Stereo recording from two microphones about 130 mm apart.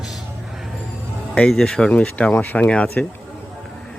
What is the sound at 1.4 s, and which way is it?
Speech, 5° left (ahead or behind).